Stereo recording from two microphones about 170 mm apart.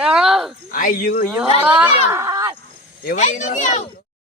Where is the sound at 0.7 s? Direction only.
55° left (ahead or behind).